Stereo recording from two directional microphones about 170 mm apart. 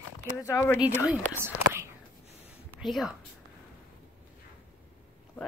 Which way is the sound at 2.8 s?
Centre (ahead or behind).